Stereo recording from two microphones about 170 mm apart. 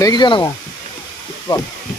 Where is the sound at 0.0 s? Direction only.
25° left (ahead or behind).